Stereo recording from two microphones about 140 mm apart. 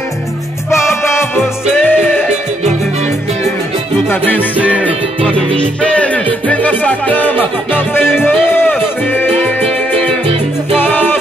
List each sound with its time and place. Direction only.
0.7 s music: 20° left (ahead or behind)
4.1 s music: 15° left (ahead or behind)
5.6 s music: 5° left (ahead or behind)
8.1 s speech: 15° left (ahead or behind)
9.1 s music: 15° left (ahead or behind)
10.8 s music: 15° left (ahead or behind)